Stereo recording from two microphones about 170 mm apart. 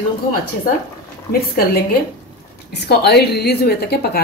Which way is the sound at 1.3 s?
65° left (ahead or behind).